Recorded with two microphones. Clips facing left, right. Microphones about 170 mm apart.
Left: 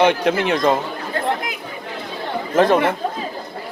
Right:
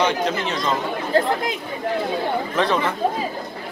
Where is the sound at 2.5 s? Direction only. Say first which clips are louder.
Left 8 dB; 50° left (ahead or behind).